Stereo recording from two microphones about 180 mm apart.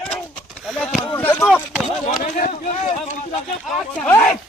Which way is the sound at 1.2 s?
10° left (ahead or behind).